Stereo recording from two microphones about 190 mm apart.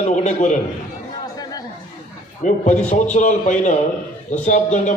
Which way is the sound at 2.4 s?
40° left (ahead or behind).